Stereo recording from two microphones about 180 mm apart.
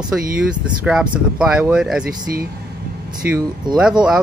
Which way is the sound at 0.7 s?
5° right (ahead or behind).